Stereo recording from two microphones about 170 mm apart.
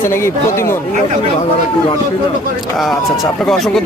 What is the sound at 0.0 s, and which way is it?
Speech, 15° left (ahead or behind).